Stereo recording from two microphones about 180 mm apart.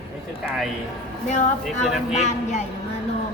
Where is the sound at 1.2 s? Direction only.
45° left (ahead or behind).